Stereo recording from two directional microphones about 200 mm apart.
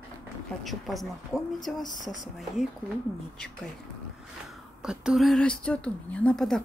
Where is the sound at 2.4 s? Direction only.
Centre (ahead or behind).